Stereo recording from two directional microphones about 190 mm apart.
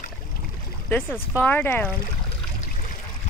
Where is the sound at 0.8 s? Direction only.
10° left (ahead or behind).